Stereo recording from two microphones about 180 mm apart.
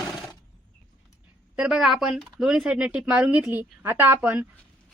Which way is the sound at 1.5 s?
5° right (ahead or behind).